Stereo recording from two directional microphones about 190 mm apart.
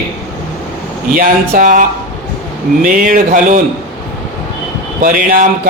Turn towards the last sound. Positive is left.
turn(degrees=-45)  # may be behind; listen again after turning